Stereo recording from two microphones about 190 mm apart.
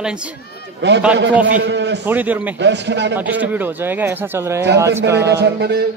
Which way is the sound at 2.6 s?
65° right (ahead or behind).